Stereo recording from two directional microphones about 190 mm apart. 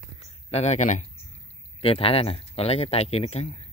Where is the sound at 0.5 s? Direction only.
35° left (ahead or behind).